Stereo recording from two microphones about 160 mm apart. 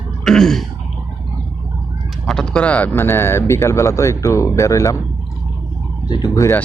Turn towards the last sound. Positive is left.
turn(degrees=20)  # may be behind; listen again after turning